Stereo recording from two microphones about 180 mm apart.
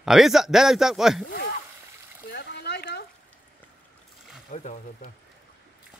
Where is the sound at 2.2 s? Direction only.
65° left (ahead or behind).